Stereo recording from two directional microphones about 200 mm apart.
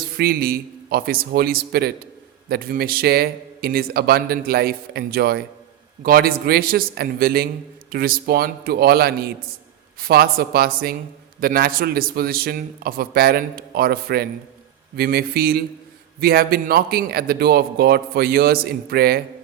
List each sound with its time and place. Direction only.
0.2 s speech: 50° right (ahead or behind)